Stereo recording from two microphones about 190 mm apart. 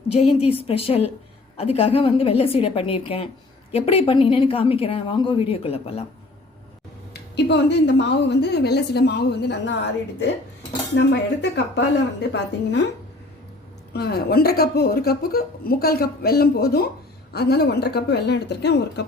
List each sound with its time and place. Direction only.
0.1 s a woman's voice: 35° left (ahead or behind)
7.1 s speech: 60° left (ahead or behind)
13.9 s a woman's voice: 55° left (ahead or behind)